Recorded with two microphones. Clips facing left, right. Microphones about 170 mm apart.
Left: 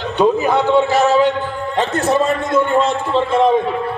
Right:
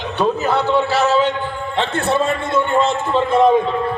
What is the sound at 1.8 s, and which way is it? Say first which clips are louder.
Speech: left 2 dB; 40° left (ahead or behind).